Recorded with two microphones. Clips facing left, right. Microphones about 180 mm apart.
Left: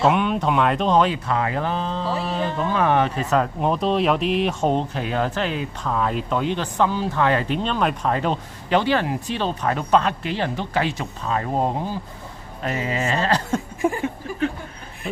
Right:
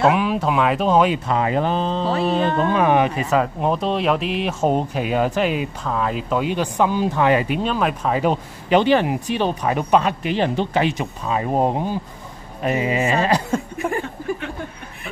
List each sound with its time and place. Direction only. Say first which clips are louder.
0.1 s speech: right 1 dB; 5° right (ahead or behind)
1.1 s speech: right 4 dB; 20° right (ahead or behind)
5.9 s speech: even; centre (ahead or behind)